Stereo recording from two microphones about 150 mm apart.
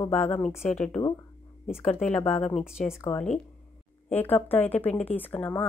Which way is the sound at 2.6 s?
5° right (ahead or behind).